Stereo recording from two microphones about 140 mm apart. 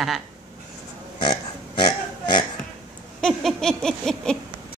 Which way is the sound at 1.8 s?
35° left (ahead or behind).